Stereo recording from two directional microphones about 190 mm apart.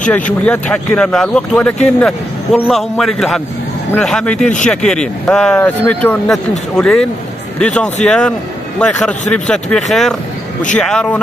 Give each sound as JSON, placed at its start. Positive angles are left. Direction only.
{"t": 0.1, "sound": "speech", "side_deg": 5}